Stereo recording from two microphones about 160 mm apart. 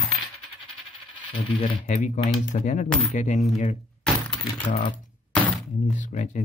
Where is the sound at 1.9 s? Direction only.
50° left (ahead or behind).